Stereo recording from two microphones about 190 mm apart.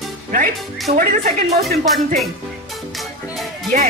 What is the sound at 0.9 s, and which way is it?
Speech, 45° right (ahead or behind).